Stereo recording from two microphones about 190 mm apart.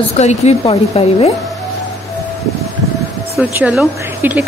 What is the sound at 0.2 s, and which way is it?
Speech, 35° left (ahead or behind).